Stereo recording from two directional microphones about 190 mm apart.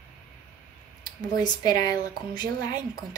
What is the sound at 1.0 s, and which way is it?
Speech, 20° left (ahead or behind).